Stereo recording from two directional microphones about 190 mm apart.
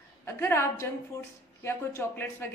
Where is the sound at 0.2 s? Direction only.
10° left (ahead or behind).